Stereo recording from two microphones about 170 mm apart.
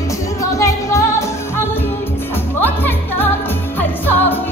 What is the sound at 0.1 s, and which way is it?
Music, 20° left (ahead or behind).